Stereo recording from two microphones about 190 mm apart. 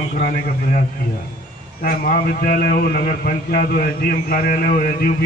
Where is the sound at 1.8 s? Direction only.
50° left (ahead or behind).